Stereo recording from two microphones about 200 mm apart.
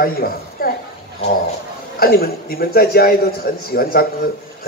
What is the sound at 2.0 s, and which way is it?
A man's voice, 50° left (ahead or behind).